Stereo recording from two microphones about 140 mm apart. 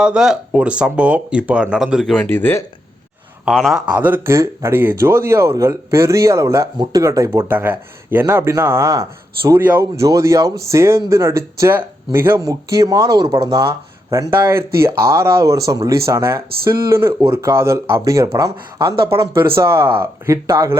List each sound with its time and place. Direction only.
0.0 s speech: 5° right (ahead or behind); by 2.6 s 15° left (ahead or behind)
3.4 s a man's voice: centre (ahead or behind)
3.8 s speech: 10° right (ahead or behind); by 18.9 s 25° right (ahead or behind)
18.9 s speech: 40° right (ahead or behind)
19.2 s speech: 20° right (ahead or behind)